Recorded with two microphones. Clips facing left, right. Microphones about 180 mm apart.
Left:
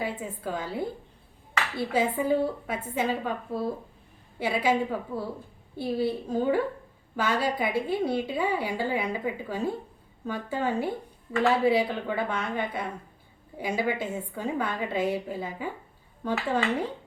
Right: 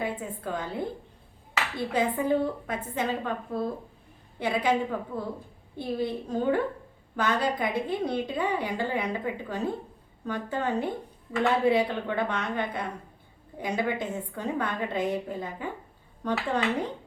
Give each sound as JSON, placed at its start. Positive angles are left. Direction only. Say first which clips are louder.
{"t": 0.0, "sound": "a woman's voice", "louder": "even", "side_deg": 5}
{"t": 1.9, "sound": "a woman's voice", "louder": "even", "side_deg": 5}